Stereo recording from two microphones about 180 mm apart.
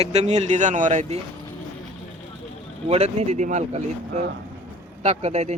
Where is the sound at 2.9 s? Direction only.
35° right (ahead or behind).